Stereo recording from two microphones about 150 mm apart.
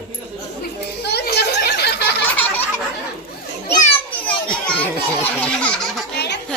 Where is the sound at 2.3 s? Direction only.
10° left (ahead or behind).